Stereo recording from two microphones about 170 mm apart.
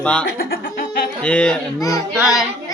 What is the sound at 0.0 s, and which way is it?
Speech, 5° left (ahead or behind).